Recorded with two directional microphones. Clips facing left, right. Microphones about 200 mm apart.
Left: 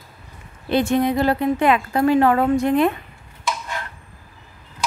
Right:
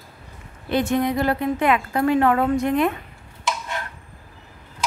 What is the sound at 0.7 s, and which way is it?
A woman's voice, 30° left (ahead or behind).